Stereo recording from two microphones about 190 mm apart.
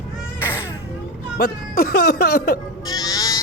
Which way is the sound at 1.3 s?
55° left (ahead or behind).